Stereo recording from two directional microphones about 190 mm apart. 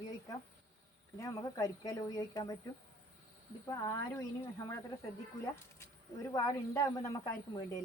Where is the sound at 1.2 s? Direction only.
15° left (ahead or behind).